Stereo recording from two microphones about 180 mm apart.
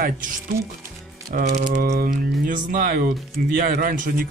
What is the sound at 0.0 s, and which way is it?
Speech, 50° right (ahead or behind).